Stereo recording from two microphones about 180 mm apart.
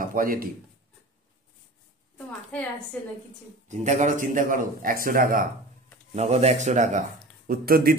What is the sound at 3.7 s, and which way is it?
A man's voice, 40° right (ahead or behind).